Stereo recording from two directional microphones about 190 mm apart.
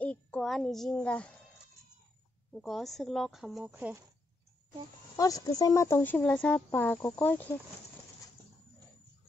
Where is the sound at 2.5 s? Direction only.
Centre (ahead or behind).